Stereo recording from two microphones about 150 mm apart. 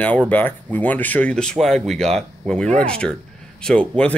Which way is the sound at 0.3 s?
10° left (ahead or behind).